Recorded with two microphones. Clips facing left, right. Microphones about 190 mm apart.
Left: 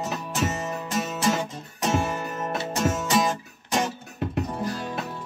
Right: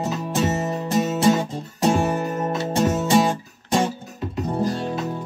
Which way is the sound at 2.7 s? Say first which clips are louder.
Right 6 dB; 30° right (ahead or behind).